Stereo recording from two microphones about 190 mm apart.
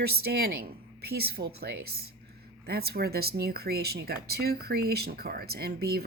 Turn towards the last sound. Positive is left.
turn(degrees=-55)  # may be behind; listen again after turning